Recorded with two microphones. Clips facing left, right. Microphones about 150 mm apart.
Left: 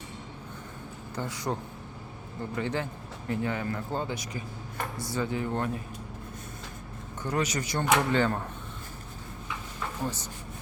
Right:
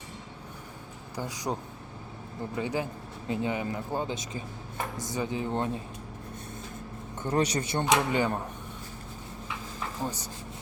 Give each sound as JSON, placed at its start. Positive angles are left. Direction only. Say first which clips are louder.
{"t": 1.1, "sound": "speech", "louder": "even", "side_deg": -15}
{"t": 2.6, "sound": "speech", "louder": "right 1 dB", "side_deg": -15}
{"t": 7.2, "sound": "speech", "louder": "right 2 dB", "side_deg": -30}
{"t": 7.9, "sound": "speech", "louder": "left 2 dB", "side_deg": -15}
{"t": 10.0, "sound": "speech", "louder": "even", "side_deg": -10}